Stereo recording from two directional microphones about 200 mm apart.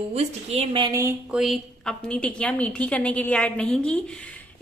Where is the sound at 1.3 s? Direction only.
Centre (ahead or behind).